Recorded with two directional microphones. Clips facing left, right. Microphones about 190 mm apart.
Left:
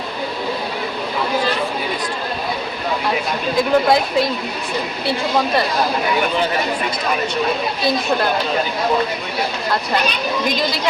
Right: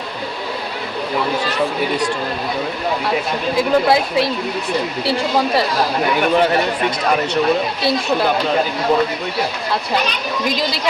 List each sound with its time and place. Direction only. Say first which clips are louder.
3.6 s a woman's voice: even; 5° right (ahead or behind)